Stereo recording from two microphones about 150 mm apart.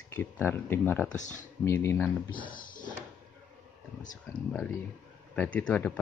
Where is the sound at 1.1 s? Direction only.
55° left (ahead or behind).